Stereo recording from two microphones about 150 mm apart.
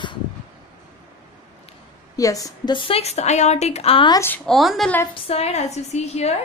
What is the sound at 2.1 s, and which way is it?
A woman's voice, 25° left (ahead or behind).